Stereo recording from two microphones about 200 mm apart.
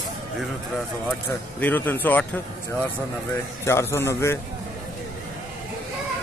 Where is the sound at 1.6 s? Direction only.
10° left (ahead or behind).